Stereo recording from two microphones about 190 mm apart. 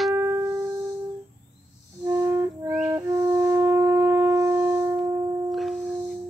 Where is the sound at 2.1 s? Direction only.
15° right (ahead or behind).